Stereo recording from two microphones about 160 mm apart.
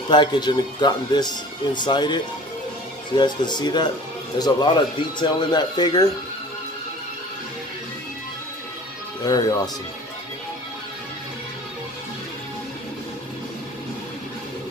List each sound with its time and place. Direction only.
0.1 s speech: 30° left (ahead or behind)
9.2 s speech: 25° left (ahead or behind)